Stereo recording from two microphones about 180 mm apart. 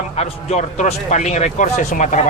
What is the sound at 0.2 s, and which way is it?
Speech, 35° left (ahead or behind).